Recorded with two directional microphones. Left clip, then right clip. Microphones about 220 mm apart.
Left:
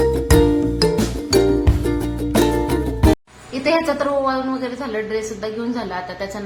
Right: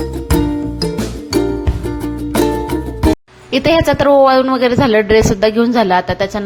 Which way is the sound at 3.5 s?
40° right (ahead or behind).